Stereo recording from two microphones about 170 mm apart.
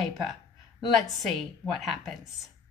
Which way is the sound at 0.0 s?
Centre (ahead or behind).